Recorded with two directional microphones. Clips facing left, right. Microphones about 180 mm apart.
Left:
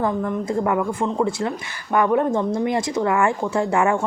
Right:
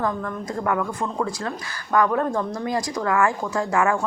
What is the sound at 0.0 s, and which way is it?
A woman's voice, 25° left (ahead or behind).